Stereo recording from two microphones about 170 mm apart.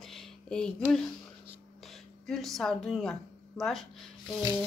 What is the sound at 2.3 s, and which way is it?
Speech, centre (ahead or behind).